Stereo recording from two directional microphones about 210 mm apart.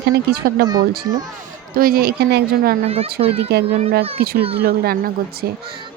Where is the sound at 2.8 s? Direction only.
30° right (ahead or behind).